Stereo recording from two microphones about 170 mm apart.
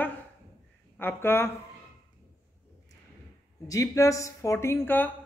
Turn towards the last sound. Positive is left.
turn(degrees=10)  # may be behind; listen again after turning